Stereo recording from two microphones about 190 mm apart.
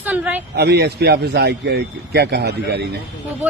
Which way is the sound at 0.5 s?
60° right (ahead or behind).